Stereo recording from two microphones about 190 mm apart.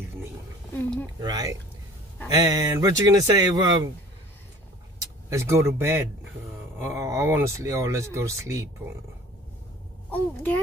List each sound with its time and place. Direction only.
1.2 s speech: 20° right (ahead or behind)
5.3 s speech: 15° right (ahead or behind)
10.1 s speech: 10° left (ahead or behind)